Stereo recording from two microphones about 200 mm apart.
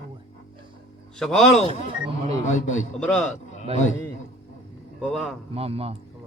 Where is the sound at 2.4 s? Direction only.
35° left (ahead or behind).